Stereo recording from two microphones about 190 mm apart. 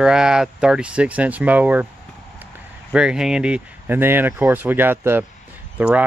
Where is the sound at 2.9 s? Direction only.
5° right (ahead or behind).